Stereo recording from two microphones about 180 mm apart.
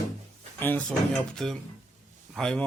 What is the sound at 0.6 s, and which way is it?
Speech, 10° left (ahead or behind).